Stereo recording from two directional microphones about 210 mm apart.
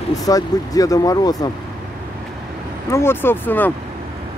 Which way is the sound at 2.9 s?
10° left (ahead or behind).